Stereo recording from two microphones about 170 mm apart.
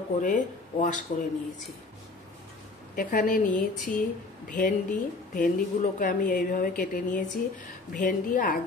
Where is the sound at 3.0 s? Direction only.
55° left (ahead or behind).